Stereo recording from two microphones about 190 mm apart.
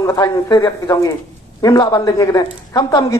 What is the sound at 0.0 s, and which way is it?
A woman's voice, 20° left (ahead or behind).